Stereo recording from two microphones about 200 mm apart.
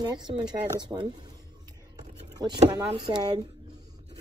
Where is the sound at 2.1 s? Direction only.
35° right (ahead or behind).